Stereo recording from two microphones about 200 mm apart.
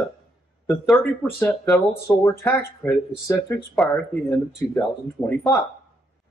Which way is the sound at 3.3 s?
10° left (ahead or behind).